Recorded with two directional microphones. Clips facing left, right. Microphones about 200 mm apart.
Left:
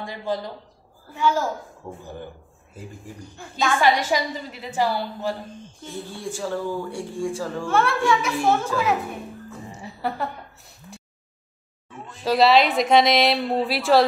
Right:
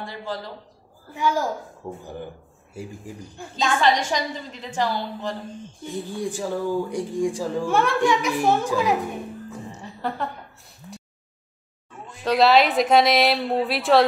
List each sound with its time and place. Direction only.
0.0 s a woman's voice: 15° left (ahead or behind)
1.1 s speech: 15° right (ahead or behind)
3.3 s speech: 15° right (ahead or behind)
3.8 s a woman's voice: 10° left (ahead or behind)
6.1 s speech: 15° right (ahead or behind)
9.8 s a woman's voice: 5° left (ahead or behind)
12.3 s speech: centre (ahead or behind)